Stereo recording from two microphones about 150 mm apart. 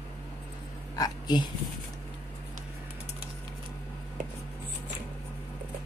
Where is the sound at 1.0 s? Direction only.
30° left (ahead or behind).